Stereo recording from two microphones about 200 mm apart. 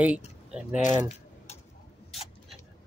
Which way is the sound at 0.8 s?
35° left (ahead or behind).